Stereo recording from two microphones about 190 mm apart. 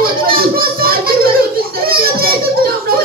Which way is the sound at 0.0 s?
50° right (ahead or behind).